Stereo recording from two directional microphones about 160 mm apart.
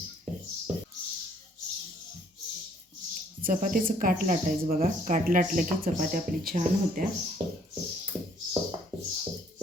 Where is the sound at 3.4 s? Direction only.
60° right (ahead or behind).